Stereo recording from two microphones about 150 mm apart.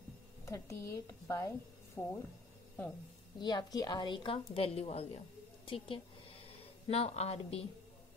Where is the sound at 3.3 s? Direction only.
30° left (ahead or behind).